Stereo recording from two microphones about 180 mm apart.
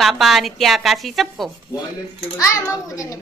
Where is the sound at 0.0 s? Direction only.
Centre (ahead or behind).